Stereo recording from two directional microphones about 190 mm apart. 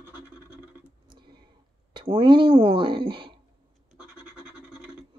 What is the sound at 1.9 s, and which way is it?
Speech, 25° right (ahead or behind).